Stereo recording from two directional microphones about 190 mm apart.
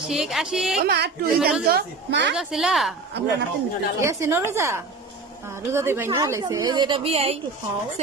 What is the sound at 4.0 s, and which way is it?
A woman's voice, 15° right (ahead or behind).